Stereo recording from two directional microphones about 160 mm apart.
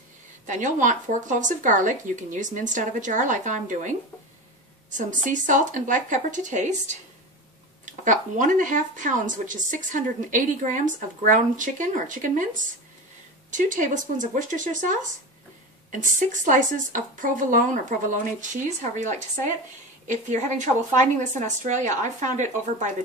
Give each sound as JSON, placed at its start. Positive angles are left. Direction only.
{"t": 0.5, "sound": "speech", "side_deg": -50}
{"t": 13.5, "sound": "speech", "side_deg": -50}